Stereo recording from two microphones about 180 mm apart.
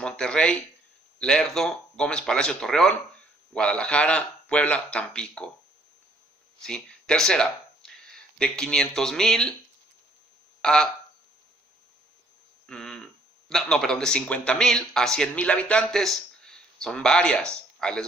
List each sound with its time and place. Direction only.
0.0 s speech: 5° left (ahead or behind)
6.6 s speech: 5° left (ahead or behind)
10.6 s speech: 5° left (ahead or behind)
12.6 s a sound: 5° left (ahead or behind)
13.5 s speech: 5° left (ahead or behind)